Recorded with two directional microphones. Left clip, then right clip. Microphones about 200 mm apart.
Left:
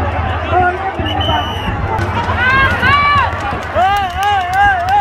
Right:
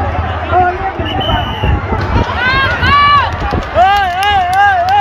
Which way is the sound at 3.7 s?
30° right (ahead or behind).